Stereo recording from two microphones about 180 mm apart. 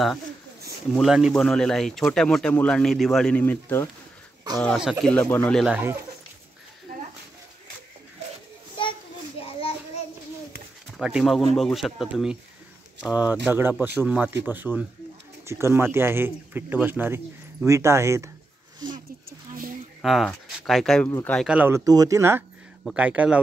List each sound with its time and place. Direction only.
0.9 s speech: 5° right (ahead or behind)
4.6 s speech: centre (ahead or behind)
5.7 s speech: 10° right (ahead or behind)
9.6 s a sound: 35° left (ahead or behind)
11.0 s speech: 5° right (ahead or behind)
20.0 s speech: centre (ahead or behind)
21.5 s speech: 10° right (ahead or behind)